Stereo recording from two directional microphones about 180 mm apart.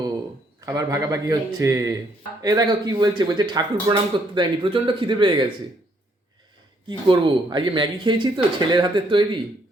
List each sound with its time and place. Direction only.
0.6 s speech: 20° right (ahead or behind)
6.8 s speech: 25° right (ahead or behind)